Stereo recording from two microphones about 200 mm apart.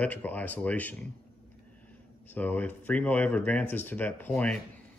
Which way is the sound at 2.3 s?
10° left (ahead or behind).